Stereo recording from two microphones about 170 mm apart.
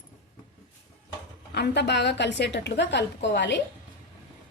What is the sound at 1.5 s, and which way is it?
A woman's voice, 90° left.